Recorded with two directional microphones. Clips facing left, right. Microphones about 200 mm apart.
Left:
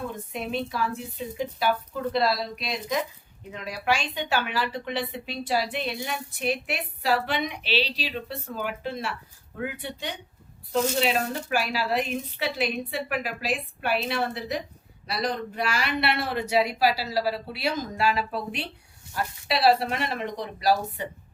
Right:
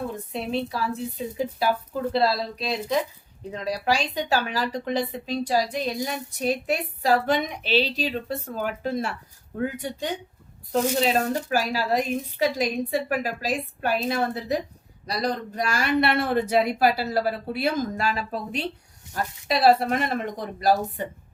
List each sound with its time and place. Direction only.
0.3 s a woman's voice: 35° right (ahead or behind)